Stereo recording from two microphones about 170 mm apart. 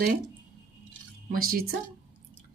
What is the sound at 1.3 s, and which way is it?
Speech, 60° right (ahead or behind).